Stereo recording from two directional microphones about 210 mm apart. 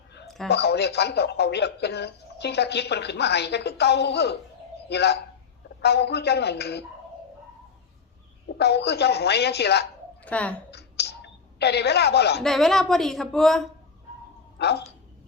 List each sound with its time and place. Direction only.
0.4 s speech: 50° left (ahead or behind)
8.5 s speech: 50° left (ahead or behind)
10.2 s speech: 5° left (ahead or behind)
10.7 s a sound: 50° left (ahead or behind)
12.4 s a woman's voice: centre (ahead or behind)
14.6 s speech: 50° left (ahead or behind)